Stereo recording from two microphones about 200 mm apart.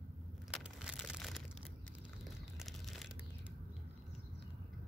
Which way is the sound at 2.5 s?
Centre (ahead or behind).